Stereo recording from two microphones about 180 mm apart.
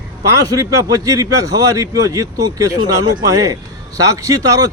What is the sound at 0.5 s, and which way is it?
A man's voice, 20° right (ahead or behind).